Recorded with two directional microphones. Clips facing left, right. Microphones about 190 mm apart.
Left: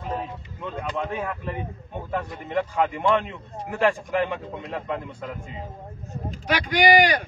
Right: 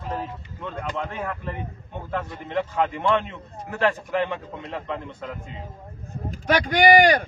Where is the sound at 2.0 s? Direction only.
10° left (ahead or behind).